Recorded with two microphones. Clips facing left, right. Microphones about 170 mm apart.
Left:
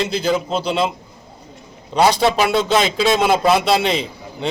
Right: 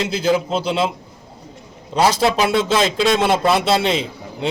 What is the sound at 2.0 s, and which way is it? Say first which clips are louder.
Speech: left 1 dB; centre (ahead or behind).